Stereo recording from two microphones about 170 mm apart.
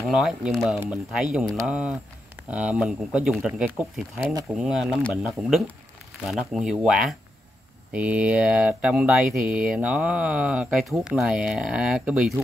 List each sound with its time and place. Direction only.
0.0 s speech: centre (ahead or behind)
4.2 s speech: 20° right (ahead or behind)
4.6 s speech: 5° right (ahead or behind)